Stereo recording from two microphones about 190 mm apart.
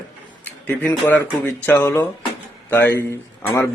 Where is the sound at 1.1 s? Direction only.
10° left (ahead or behind).